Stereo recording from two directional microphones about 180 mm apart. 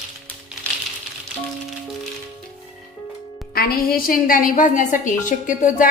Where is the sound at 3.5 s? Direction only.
55° left (ahead or behind).